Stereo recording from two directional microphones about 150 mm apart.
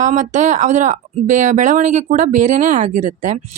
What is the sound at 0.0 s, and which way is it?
Speech, 55° right (ahead or behind).